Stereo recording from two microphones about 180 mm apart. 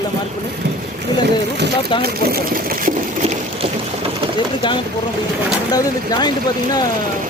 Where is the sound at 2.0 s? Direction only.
55° right (ahead or behind).